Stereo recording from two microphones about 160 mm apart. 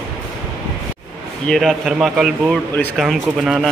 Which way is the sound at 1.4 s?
Centre (ahead or behind).